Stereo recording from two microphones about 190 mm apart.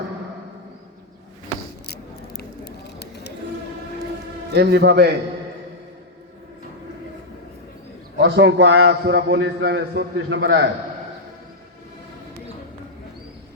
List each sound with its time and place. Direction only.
1.9 s biting: 55° left (ahead or behind)
4.5 s a man's voice: 60° right (ahead or behind)
8.2 s a man's voice: 70° right (ahead or behind)